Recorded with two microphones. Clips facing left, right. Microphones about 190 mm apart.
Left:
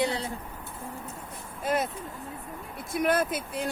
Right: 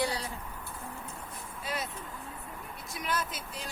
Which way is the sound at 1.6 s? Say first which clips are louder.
Left 9 dB; 50° left (ahead or behind).